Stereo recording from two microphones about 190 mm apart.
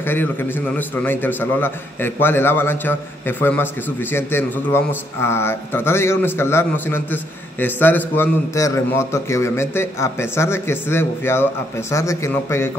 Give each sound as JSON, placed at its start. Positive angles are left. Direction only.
{"t": 0.0, "sound": "a man's voice", "side_deg": 10}